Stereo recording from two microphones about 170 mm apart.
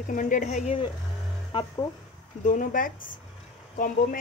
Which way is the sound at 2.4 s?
50° left (ahead or behind).